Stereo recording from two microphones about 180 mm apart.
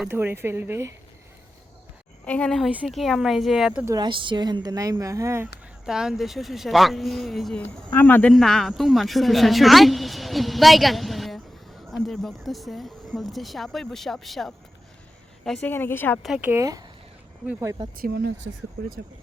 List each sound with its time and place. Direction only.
0.0 s speech: 10° right (ahead or behind)
2.2 s speech: 5° left (ahead or behind)
3.8 s a woman's voice: 25° right (ahead or behind)
5.8 s a woman's voice: 5° right (ahead or behind)
16.2 s speech: 5° right (ahead or behind)
17.4 s speech: 5° right (ahead or behind)
18.0 s speech: 55° right (ahead or behind)